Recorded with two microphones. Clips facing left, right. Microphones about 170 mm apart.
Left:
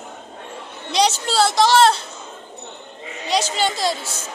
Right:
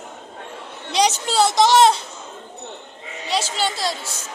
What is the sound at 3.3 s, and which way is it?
Speech, 5° right (ahead or behind).